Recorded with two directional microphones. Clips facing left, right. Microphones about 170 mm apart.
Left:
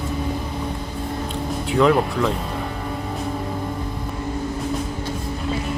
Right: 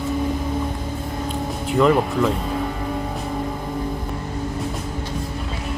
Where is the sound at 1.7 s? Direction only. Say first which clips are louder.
Even; centre (ahead or behind).